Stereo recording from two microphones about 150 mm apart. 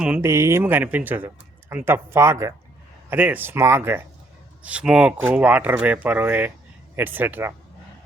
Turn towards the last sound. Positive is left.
turn(degrees=-15)  # may be behind; listen again after turning